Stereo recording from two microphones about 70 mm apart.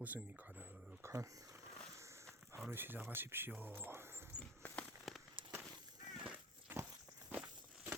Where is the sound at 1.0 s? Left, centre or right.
Right.